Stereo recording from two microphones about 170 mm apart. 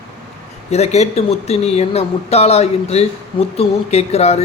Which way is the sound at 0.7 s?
40° left (ahead or behind).